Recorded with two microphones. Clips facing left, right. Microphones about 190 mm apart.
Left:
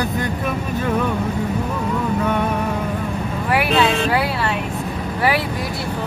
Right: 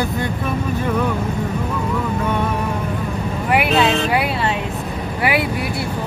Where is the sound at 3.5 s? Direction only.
20° right (ahead or behind).